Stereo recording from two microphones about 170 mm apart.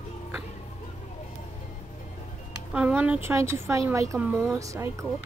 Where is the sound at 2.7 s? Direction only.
10° right (ahead or behind).